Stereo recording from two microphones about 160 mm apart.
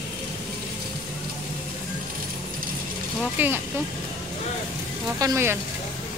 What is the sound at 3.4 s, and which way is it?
Speech, 10° right (ahead or behind).